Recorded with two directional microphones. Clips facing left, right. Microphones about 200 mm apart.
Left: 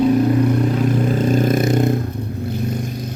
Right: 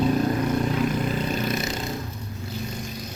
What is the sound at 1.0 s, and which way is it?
Vehicle, 45° left (ahead or behind).